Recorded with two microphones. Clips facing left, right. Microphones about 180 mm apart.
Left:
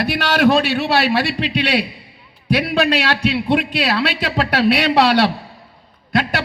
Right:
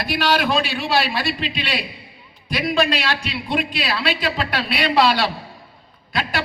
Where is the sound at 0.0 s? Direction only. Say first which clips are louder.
Left 5 dB; 65° left (ahead or behind).